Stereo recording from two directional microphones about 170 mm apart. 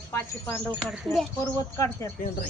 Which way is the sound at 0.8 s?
Centre (ahead or behind).